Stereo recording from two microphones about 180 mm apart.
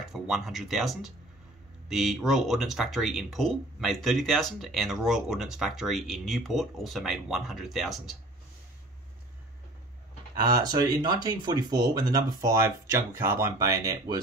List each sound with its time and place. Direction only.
0.1 s speech: centre (ahead or behind)
10.5 s speech: 20° right (ahead or behind)